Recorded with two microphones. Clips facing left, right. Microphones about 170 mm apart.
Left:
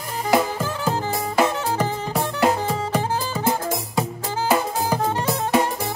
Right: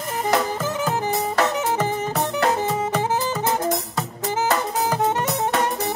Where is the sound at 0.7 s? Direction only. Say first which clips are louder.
Right 1 dB; 20° right (ahead or behind).